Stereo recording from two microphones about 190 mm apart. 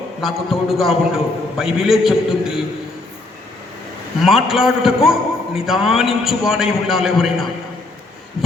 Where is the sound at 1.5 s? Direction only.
Centre (ahead or behind).